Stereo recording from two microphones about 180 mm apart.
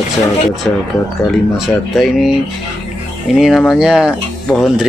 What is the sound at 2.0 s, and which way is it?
Speech, centre (ahead or behind).